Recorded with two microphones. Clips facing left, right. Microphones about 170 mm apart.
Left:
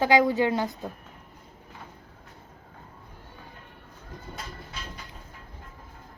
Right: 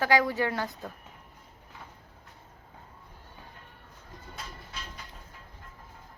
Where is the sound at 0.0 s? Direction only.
20° left (ahead or behind).